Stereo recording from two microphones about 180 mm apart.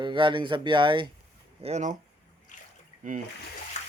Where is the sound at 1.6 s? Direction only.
40° right (ahead or behind).